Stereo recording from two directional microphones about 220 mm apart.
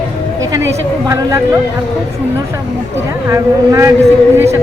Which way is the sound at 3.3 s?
15° right (ahead or behind).